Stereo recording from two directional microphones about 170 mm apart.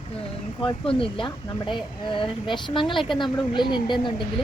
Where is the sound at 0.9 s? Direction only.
30° left (ahead or behind).